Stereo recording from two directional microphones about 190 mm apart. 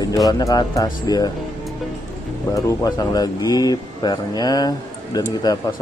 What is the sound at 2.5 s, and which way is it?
Speech, 15° left (ahead or behind).